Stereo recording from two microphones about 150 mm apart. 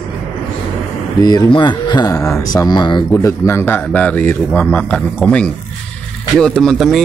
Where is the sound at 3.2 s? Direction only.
20° left (ahead or behind).